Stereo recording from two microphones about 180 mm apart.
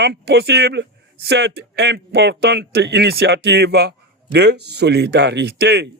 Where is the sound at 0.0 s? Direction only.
65° right (ahead or behind).